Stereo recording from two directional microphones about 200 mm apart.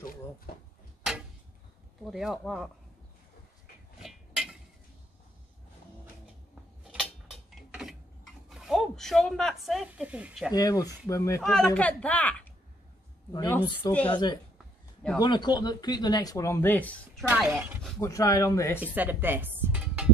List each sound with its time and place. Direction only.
2.0 s speech: centre (ahead or behind)
4.0 s a sound: centre (ahead or behind)
6.9 s a sound: 5° right (ahead or behind)
10.5 s a woman's voice: 20° left (ahead or behind)
11.4 s a woman's voice: 5° left (ahead or behind)
14.0 s speech: 20° left (ahead or behind)
17.3 s a woman's voice: 5° right (ahead or behind)
18.0 s a woman's voice: 15° left (ahead or behind)
18.9 s dishes: 10° right (ahead or behind)